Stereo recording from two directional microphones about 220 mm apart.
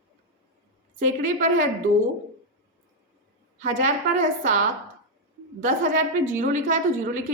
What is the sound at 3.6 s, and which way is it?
Speech, 35° right (ahead or behind).